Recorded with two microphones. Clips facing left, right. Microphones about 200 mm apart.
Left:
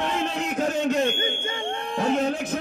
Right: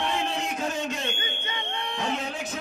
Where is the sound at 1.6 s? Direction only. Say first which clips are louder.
Left 6 dB; 45° left (ahead or behind).